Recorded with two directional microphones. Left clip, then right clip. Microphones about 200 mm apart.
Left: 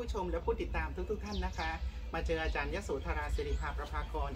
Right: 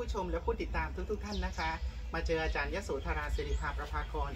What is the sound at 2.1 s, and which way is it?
A woman's voice, centre (ahead or behind).